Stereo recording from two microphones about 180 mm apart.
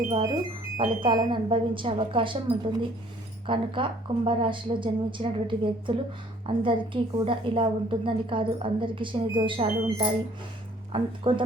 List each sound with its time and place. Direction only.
0.8 s a woman's voice: 30° right (ahead or behind)